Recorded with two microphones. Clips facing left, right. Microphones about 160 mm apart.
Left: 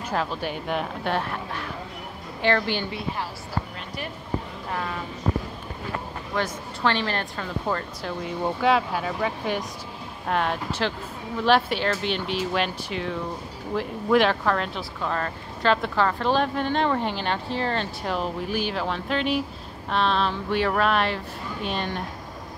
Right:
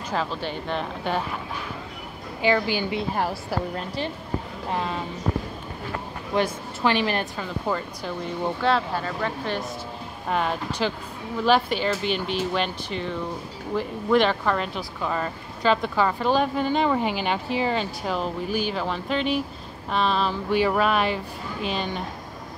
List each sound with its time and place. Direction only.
0.1 s a woman's voice: 5° left (ahead or behind)
3.2 s speech: 50° right (ahead or behind)
4.7 s speech: 20° right (ahead or behind)
6.3 s a woman's voice: 10° right (ahead or behind)
7.6 s speech: centre (ahead or behind)
8.5 s speech: 10° left (ahead or behind)
10.2 s speech: centre (ahead or behind)